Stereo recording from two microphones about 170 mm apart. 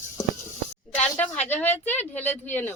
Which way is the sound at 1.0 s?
10° left (ahead or behind).